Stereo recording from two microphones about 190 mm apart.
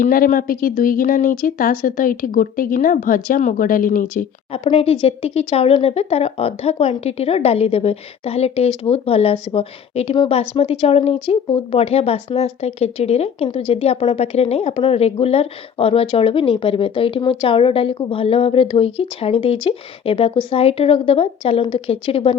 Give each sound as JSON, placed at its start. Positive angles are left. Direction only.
{"t": 0.0, "sound": "speech", "side_deg": 45}
{"t": 4.5, "sound": "speech", "side_deg": 30}